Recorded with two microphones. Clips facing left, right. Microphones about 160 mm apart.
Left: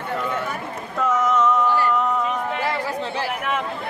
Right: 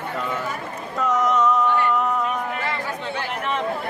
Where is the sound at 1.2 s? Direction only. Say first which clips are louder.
Even; 5° left (ahead or behind).